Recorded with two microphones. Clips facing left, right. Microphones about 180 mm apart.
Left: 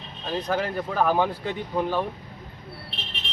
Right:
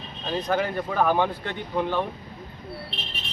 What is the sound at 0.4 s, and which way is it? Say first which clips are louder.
Speech: right 2 dB; 5° left (ahead or behind).